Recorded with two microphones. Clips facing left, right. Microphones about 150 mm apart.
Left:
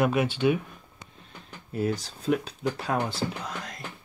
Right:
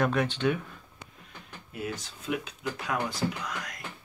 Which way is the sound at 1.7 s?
35° left (ahead or behind).